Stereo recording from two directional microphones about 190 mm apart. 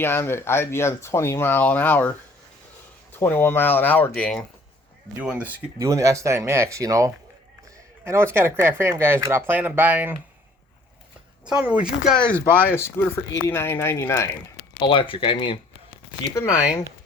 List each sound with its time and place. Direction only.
0.0 s speech: 10° left (ahead or behind)
5.2 s speech: 5° right (ahead or behind)
11.4 s speech: 5° right (ahead or behind)
12.0 s speech: 5° left (ahead or behind)
14.8 s speech: 25° left (ahead or behind)
16.3 s speech: 15° left (ahead or behind)